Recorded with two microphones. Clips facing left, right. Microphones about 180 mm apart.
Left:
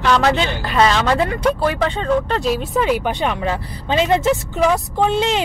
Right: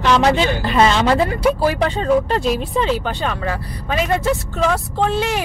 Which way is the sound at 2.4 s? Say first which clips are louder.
Left 1 dB; centre (ahead or behind).